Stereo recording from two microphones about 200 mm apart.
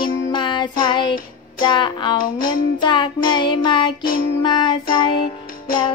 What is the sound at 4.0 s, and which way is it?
Child singing, 45° left (ahead or behind).